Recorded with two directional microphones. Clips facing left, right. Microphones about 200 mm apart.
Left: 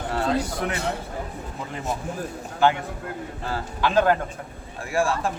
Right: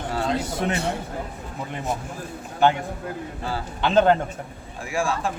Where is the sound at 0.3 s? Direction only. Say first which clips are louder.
Right 1 dB; 20° right (ahead or behind).